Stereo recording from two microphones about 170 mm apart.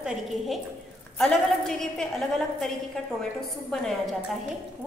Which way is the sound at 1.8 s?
Centre (ahead or behind).